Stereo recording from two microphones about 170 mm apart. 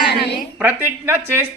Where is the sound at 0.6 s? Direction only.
10° right (ahead or behind).